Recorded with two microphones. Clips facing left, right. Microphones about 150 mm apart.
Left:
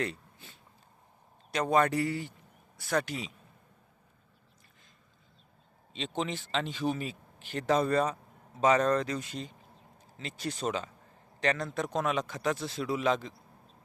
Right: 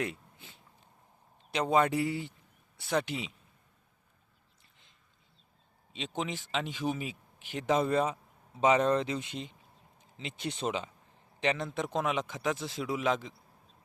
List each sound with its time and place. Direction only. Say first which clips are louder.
0.0 s a sound: left 1 dB; 15° right (ahead or behind)
1.5 s speech: even; 15° right (ahead or behind)
6.0 s speech: left 2 dB; 5° right (ahead or behind)
7.5 s speech: left 1 dB; 15° right (ahead or behind)